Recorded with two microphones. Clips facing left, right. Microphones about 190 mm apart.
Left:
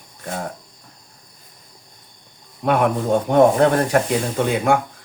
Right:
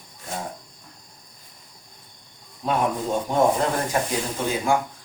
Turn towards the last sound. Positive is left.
turn(degrees=65)  # may be behind; listen again after turning